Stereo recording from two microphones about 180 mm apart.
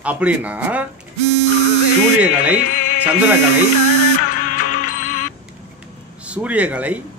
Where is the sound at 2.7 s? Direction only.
45° left (ahead or behind).